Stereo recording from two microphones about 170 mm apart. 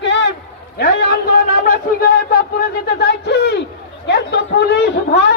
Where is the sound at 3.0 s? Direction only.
80° left.